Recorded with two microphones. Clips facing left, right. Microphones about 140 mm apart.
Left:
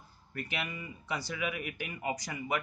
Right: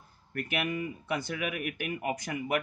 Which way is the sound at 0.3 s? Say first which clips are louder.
Right 6 dB; 55° right (ahead or behind).